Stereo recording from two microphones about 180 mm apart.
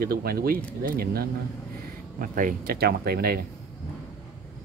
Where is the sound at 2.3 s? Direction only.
50° right (ahead or behind).